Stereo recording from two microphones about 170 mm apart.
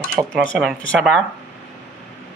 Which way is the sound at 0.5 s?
Centre (ahead or behind).